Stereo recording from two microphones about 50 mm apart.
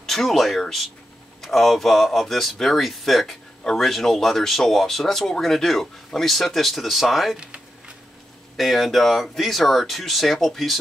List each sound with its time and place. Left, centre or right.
0.0 s speech: centre
8.5 s speech: centre